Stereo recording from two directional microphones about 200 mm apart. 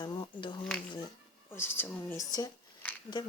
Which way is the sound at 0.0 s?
20° left (ahead or behind).